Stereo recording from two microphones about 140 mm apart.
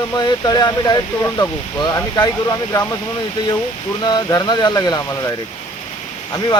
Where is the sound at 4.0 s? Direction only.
30° left (ahead or behind).